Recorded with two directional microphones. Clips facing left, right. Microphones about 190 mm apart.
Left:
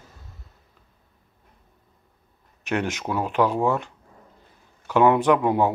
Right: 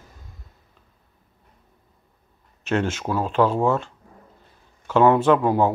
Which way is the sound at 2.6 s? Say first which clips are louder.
Right 2 dB; 15° left (ahead or behind).